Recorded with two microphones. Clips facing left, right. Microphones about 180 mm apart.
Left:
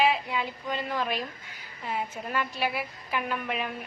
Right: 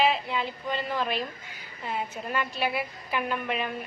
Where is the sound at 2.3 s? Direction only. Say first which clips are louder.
Right 1 dB; 5° left (ahead or behind).